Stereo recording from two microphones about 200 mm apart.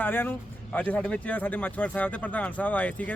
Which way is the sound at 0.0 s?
10° left (ahead or behind).